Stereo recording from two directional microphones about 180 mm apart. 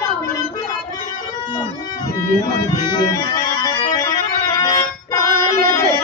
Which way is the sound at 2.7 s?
25° left (ahead or behind).